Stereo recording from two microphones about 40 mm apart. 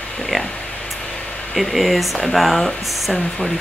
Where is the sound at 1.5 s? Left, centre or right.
Centre.